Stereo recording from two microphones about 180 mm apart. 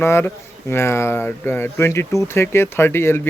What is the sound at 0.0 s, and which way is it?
Speech, 15° left (ahead or behind).